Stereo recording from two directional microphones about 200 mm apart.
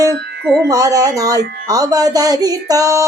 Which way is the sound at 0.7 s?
15° right (ahead or behind).